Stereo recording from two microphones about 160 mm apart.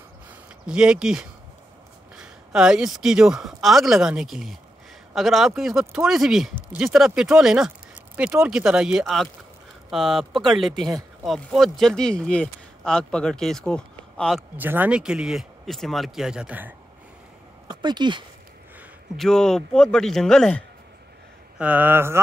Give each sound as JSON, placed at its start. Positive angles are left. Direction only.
{"t": 0.7, "sound": "speech", "side_deg": -5}
{"t": 14.6, "sound": "speech", "side_deg": -10}
{"t": 17.6, "sound": "speech", "side_deg": -25}
{"t": 19.1, "sound": "speech", "side_deg": 5}
{"t": 21.5, "sound": "mantra", "side_deg": -10}